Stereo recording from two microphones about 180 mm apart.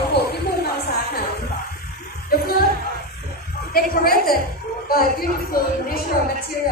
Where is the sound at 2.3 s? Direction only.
55° left (ahead or behind).